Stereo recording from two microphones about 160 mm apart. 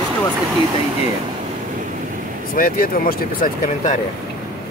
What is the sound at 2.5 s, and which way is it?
Speech, 65° left (ahead or behind).